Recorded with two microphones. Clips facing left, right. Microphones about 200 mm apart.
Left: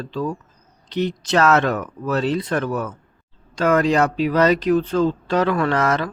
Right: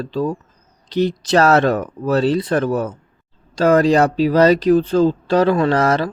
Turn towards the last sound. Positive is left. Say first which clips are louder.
# right 4 dB
turn(degrees=-35)  # may be behind; listen again after turning